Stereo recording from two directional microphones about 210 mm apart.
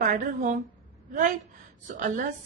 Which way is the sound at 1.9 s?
40° right (ahead or behind).